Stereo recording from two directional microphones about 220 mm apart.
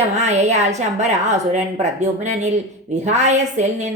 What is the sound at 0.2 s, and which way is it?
Speech, 30° right (ahead or behind).